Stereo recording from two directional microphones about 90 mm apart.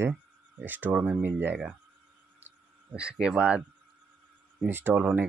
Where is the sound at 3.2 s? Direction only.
10° right (ahead or behind).